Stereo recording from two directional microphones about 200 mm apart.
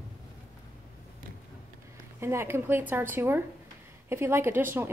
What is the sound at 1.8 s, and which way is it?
A woman's voice, 15° right (ahead or behind).